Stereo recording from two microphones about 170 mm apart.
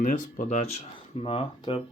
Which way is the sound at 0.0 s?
50° left (ahead or behind).